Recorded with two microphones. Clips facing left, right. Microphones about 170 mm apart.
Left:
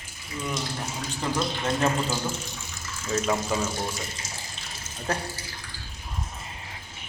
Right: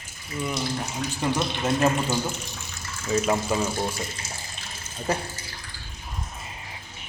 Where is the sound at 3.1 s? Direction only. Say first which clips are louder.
Right 3 dB; 10° right (ahead or behind).